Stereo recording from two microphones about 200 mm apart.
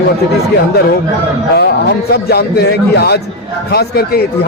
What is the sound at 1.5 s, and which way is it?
Speech, 55° left (ahead or behind).